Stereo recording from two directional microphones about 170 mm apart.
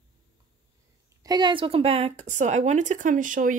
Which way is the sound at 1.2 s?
25° right (ahead or behind).